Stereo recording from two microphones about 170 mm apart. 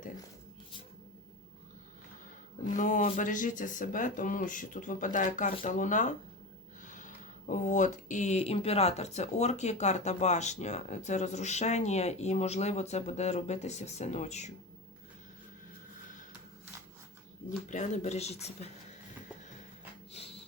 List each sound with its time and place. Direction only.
2.7 s speech: 50° left (ahead or behind)
17.7 s speech: 45° left (ahead or behind)